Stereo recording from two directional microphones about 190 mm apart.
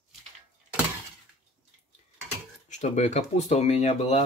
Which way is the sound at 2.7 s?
40° left (ahead or behind).